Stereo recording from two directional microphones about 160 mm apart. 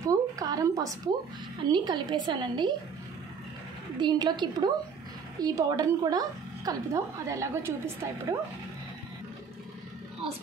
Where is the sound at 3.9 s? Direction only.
25° right (ahead or behind).